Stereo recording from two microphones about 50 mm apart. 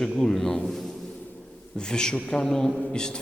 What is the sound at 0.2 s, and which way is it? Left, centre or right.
Speech, centre.